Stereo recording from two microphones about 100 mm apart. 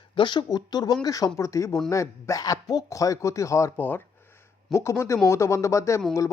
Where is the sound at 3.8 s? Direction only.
20° left (ahead or behind).